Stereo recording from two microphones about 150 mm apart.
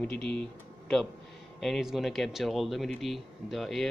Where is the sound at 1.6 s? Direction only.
Centre (ahead or behind).